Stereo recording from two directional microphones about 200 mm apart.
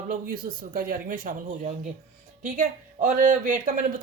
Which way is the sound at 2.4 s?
40° right (ahead or behind).